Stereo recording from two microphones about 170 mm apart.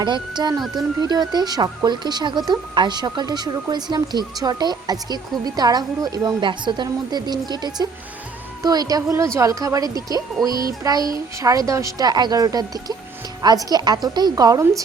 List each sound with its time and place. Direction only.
0.0 s speech: 25° right (ahead or behind)